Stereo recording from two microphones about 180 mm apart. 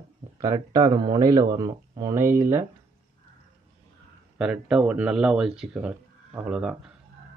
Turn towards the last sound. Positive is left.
turn(degrees=-5)  # may be behind; listen again after turning